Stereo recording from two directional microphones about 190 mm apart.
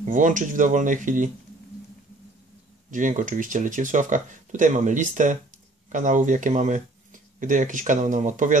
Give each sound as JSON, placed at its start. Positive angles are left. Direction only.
{"t": 0.0, "sound": "speech", "side_deg": -45}
{"t": 2.9, "sound": "speech", "side_deg": -40}